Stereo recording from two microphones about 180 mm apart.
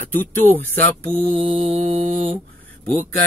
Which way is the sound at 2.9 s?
50° right (ahead or behind).